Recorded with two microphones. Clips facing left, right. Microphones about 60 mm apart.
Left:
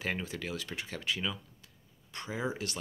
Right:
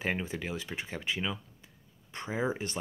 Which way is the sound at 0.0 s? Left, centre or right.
Right.